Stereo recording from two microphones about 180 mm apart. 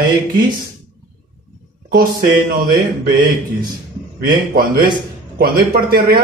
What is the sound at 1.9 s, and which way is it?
Speech, 55° right (ahead or behind).